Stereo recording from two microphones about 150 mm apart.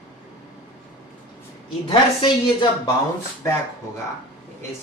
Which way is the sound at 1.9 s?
30° left (ahead or behind).